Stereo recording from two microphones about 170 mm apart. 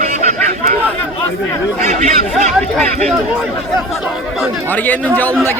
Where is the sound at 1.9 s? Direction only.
45° right (ahead or behind).